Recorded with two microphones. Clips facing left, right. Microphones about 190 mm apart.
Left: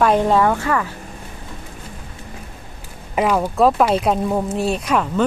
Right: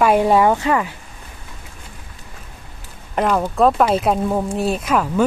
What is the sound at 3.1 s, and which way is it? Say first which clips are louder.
Speech: even; 5° left (ahead or behind).